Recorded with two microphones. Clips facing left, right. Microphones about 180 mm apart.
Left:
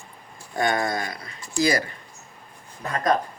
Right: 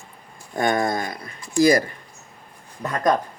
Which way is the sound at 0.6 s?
50° right (ahead or behind).